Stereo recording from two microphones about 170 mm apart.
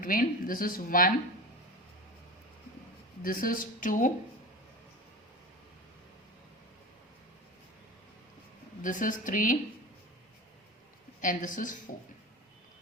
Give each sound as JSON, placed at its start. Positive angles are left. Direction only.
{"t": 0.0, "sound": "speech", "side_deg": 55}
{"t": 3.2, "sound": "a woman's voice", "side_deg": 55}
{"t": 8.8, "sound": "a woman's voice", "side_deg": 50}
{"t": 11.2, "sound": "a woman's voice", "side_deg": 50}